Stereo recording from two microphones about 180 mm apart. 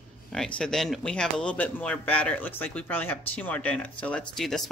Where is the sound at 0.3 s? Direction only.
5° left (ahead or behind).